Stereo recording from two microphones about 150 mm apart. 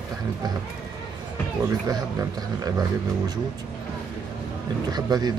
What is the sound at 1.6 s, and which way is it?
Speech, 20° right (ahead or behind).